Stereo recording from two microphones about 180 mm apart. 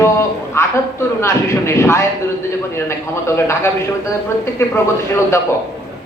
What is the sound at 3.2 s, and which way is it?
A man's voice, 15° left (ahead or behind).